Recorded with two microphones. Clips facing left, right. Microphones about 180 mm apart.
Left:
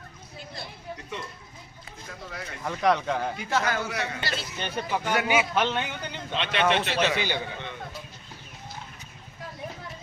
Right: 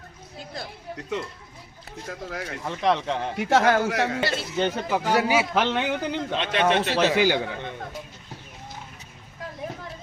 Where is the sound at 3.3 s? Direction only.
75° right (ahead or behind).